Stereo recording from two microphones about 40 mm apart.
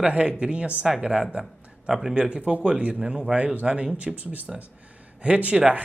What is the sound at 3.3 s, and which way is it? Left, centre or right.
Speech, right.